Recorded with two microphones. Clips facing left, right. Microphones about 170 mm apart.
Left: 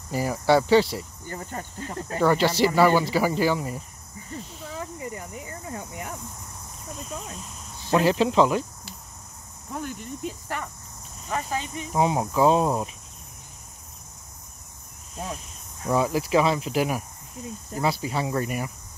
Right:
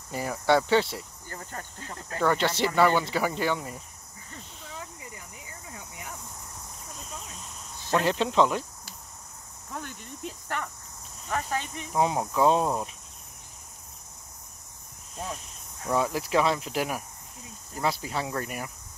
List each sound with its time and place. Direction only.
0.1 s speech: 5° left (ahead or behind)
1.2 s speech: 15° left (ahead or behind)
5.0 s speech: 55° left (ahead or behind)
7.9 s speech: 5° left (ahead or behind)
9.7 s speech: 10° left (ahead or behind)
15.9 s speech: 5° left (ahead or behind)